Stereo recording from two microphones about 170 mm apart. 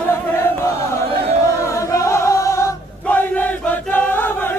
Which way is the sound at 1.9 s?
15° left (ahead or behind).